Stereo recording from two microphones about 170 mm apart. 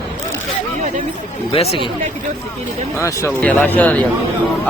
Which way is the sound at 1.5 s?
35° left (ahead or behind).